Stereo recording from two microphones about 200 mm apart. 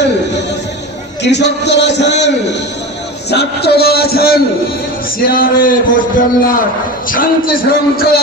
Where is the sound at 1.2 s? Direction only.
60° left (ahead or behind).